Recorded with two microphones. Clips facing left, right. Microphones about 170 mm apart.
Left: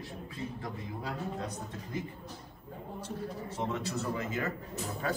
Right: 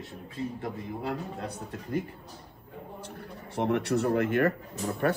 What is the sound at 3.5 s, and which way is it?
A man's voice, 65° right (ahead or behind).